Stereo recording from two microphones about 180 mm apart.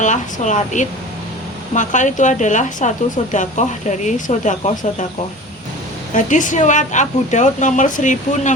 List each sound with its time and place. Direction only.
0.0 s a woman's voice: 40° left (ahead or behind)
6.1 s a woman's voice: 45° left (ahead or behind)